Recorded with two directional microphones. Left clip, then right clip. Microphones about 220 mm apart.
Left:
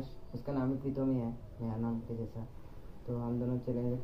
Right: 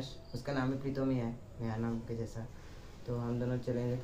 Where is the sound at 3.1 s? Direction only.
25° right (ahead or behind).